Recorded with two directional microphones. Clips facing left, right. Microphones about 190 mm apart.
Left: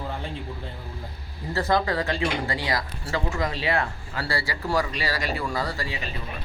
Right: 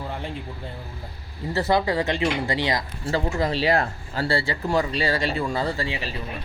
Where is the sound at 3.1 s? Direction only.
30° right (ahead or behind).